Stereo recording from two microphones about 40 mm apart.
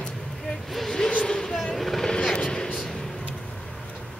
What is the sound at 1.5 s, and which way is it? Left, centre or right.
Speech, centre.